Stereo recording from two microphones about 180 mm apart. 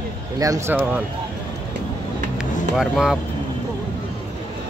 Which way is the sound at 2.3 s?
5° right (ahead or behind).